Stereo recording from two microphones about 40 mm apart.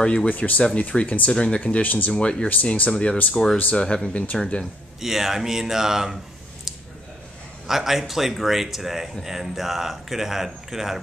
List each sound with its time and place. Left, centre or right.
0.0 s speech: left
0.3 s speech: left
1.3 s speech: left
1.8 s speech: left
2.0 s speech: left
3.4 s speech: centre
5.0 s speech: centre
7.6 s speech: centre